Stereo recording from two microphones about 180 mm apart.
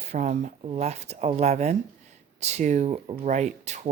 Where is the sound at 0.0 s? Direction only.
40° right (ahead or behind).